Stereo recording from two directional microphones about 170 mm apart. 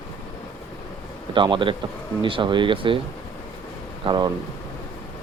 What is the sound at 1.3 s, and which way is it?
Speech, 30° right (ahead or behind).